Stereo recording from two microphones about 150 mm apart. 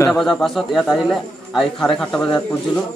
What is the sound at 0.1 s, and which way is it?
Speech, centre (ahead or behind).